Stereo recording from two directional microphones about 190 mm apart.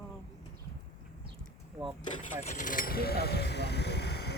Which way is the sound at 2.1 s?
40° left (ahead or behind).